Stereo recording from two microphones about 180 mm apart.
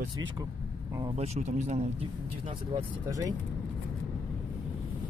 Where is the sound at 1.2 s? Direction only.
40° right (ahead or behind).